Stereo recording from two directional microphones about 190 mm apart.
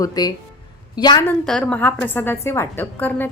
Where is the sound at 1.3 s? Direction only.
10° left (ahead or behind).